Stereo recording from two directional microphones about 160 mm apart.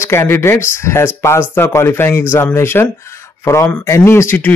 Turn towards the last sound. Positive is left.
turn(degrees=10)  # may be behind; listen again after turning